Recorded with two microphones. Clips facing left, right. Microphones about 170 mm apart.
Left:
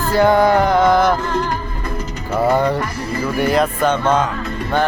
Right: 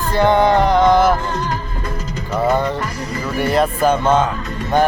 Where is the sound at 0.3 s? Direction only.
25° right (ahead or behind).